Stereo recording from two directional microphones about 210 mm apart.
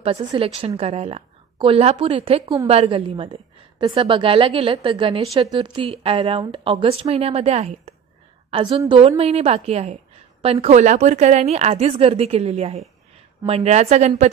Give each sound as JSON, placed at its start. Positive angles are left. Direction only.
{"t": 0.0, "sound": "a woman's voice", "side_deg": -25}
{"t": 2.4, "sound": "a woman's voice", "side_deg": -15}
{"t": 2.7, "sound": "a woman's voice", "side_deg": -30}